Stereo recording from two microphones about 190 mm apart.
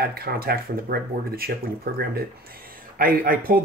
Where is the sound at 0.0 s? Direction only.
55° right (ahead or behind).